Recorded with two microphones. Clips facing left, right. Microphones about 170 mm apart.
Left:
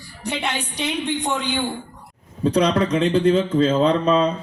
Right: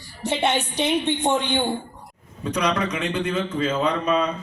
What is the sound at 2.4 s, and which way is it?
A man's voice, 30° left (ahead or behind).